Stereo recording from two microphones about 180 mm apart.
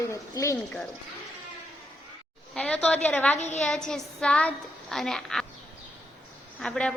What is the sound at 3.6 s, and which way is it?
A woman's voice, 5° left (ahead or behind).